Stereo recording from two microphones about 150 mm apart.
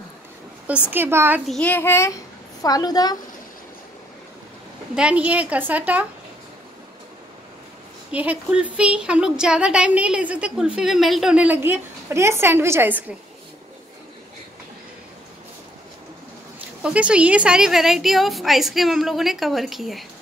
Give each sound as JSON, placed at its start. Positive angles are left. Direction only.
{"t": 0.8, "sound": "a woman's voice", "side_deg": -15}
{"t": 1.5, "sound": "a child's voice", "side_deg": 10}
{"t": 4.9, "sound": "a woman's voice", "side_deg": -10}
{"t": 8.1, "sound": "a woman's voice", "side_deg": -10}
{"t": 16.8, "sound": "a woman's voice", "side_deg": -5}